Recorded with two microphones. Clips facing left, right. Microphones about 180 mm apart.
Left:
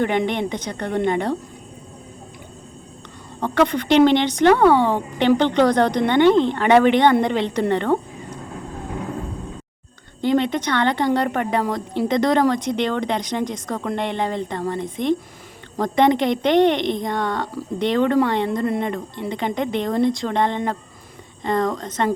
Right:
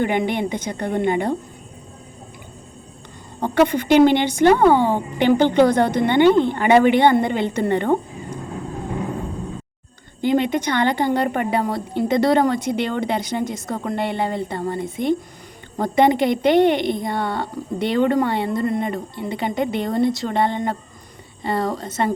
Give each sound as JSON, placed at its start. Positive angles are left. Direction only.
{"t": 0.0, "sound": "a woman's voice", "side_deg": -5}
{"t": 3.4, "sound": "a woman's voice", "side_deg": -10}
{"t": 10.2, "sound": "a woman's voice", "side_deg": -10}